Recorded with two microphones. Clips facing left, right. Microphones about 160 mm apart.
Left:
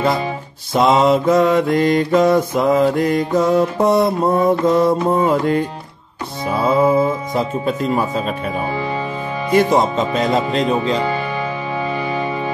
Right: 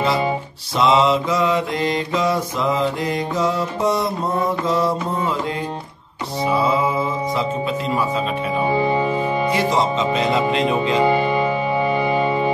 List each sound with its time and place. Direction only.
0.7 s mantra: 50° left (ahead or behind)
6.5 s speech: 45° left (ahead or behind)
8.6 s speech: 20° right (ahead or behind)
9.5 s mantra: 50° left (ahead or behind)
11.1 s music: 20° right (ahead or behind)